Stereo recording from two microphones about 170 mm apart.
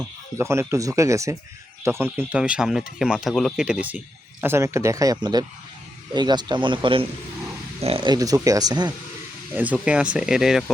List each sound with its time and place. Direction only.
0.3 s speech: 15° right (ahead or behind)
9.6 s speech: 5° right (ahead or behind)